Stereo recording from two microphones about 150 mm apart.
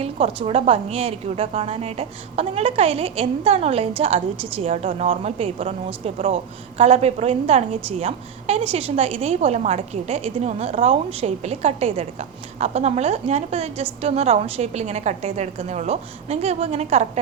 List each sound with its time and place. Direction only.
0.0 s a woman's voice: 45° right (ahead or behind)